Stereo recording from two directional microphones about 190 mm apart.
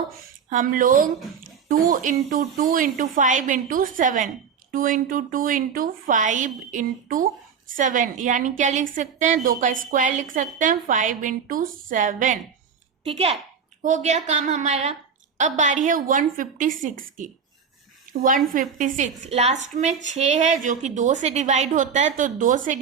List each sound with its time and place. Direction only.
0.5 s a woman's voice: 45° right (ahead or behind)
13.1 s a woman's voice: 30° right (ahead or behind)
18.1 s a sound: 45° right (ahead or behind)
18.5 s a woman's voice: 45° right (ahead or behind)